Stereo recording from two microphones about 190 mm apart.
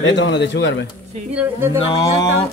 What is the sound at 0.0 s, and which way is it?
Speech, 70° left (ahead or behind).